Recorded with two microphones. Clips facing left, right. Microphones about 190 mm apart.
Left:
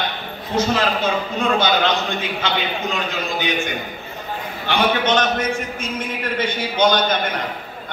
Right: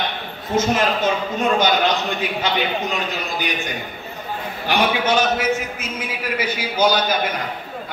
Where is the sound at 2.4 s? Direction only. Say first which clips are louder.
Right 1 dB; 40° right (ahead or behind).